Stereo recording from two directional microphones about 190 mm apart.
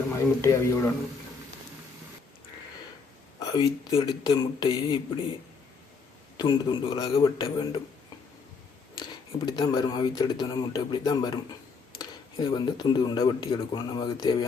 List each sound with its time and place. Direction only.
0.4 s speech: 15° left (ahead or behind)
3.4 s speech: 20° left (ahead or behind)
6.3 s speech: 20° left (ahead or behind)
9.5 s speech: 20° left (ahead or behind)